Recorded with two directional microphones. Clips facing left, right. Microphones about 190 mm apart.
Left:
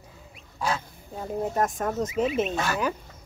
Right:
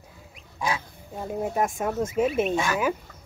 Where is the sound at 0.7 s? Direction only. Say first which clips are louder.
Even; 10° right (ahead or behind).